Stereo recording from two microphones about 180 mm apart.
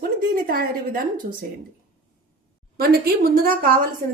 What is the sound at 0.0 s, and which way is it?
A woman's voice, 55° right (ahead or behind).